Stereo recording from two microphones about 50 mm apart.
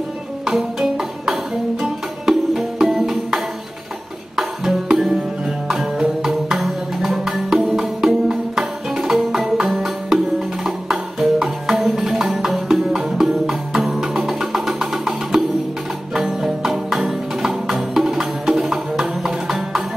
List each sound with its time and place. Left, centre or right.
0.5 s music: centre
4.4 s music: centre